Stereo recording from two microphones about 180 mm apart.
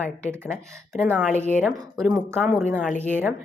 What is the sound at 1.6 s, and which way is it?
A woman's voice, 5° left (ahead or behind).